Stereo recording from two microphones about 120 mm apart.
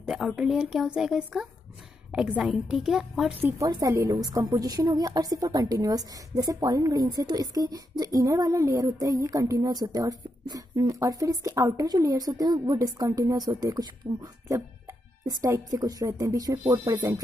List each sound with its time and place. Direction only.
0.0 s speech: 5° right (ahead or behind)
3.3 s a woman's voice: 15° right (ahead or behind); by 16.9 s 35° right (ahead or behind)